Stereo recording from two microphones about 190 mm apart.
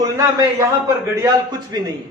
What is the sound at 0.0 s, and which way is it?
A man's voice, 15° right (ahead or behind).